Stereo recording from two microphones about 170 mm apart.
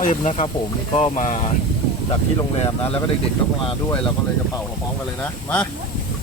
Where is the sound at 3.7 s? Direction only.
30° left (ahead or behind).